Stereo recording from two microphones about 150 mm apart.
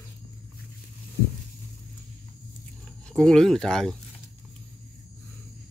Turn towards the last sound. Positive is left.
turn(degrees=5)  # may be behind; listen again after turning